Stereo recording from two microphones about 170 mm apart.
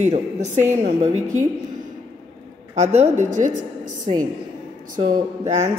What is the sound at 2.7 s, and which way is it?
A woman's voice, 40° right (ahead or behind).